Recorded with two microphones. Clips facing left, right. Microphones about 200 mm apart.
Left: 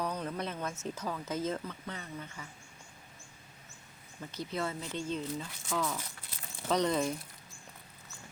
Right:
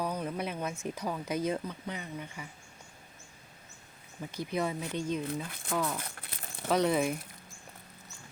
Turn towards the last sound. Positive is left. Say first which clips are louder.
# right 2 dB
turn(degrees=-10)  # may be behind; listen again after turning